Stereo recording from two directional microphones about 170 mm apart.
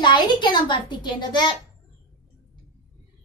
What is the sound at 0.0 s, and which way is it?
A child's voice, 25° left (ahead or behind).